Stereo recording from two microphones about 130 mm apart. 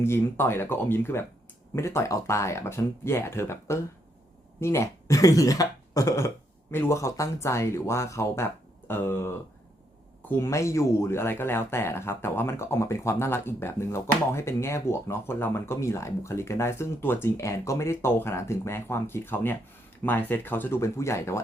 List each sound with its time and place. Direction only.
0.0 s speech: 20° left (ahead or behind)